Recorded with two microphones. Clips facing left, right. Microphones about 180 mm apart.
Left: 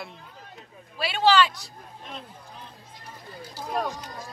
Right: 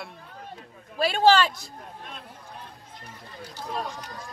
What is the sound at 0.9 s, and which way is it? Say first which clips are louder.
Speech: right 2 dB; 45° right (ahead or behind).